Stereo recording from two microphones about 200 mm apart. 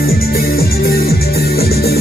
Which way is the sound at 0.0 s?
50° left (ahead or behind).